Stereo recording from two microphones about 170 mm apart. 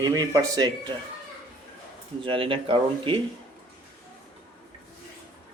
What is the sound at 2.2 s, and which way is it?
Speech, 30° right (ahead or behind).